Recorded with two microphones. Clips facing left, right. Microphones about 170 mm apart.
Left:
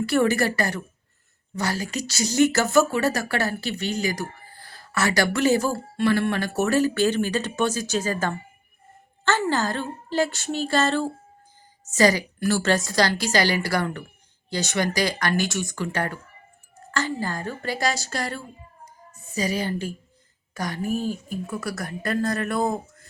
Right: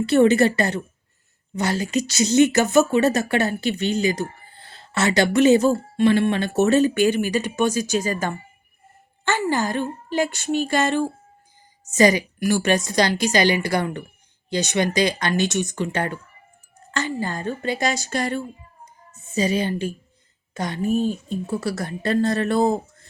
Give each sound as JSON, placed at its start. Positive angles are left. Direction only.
{"t": 0.0, "sound": "a woman's voice", "side_deg": -20}